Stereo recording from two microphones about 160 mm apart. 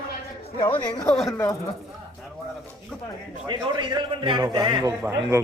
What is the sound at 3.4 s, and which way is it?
A man's voice, 30° right (ahead or behind).